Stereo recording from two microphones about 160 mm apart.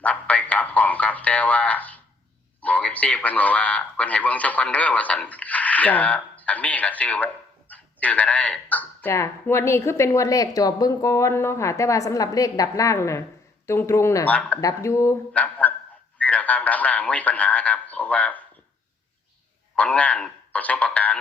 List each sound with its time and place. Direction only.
0.0 s a sound: 10° left (ahead or behind)
2.6 s speech: 10° left (ahead or behind)
19.7 s a man's voice: 10° left (ahead or behind)